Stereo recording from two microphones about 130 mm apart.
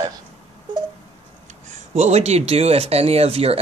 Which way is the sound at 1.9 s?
60° right (ahead or behind).